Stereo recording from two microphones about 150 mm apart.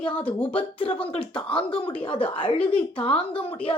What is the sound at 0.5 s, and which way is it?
Speech, 35° left (ahead or behind).